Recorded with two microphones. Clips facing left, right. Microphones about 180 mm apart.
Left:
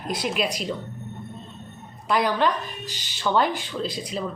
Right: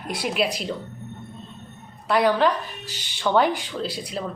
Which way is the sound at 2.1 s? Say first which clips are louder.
Right 3 dB; 10° right (ahead or behind).